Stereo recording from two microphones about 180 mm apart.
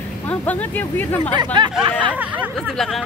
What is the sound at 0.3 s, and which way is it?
Speech, 10° left (ahead or behind).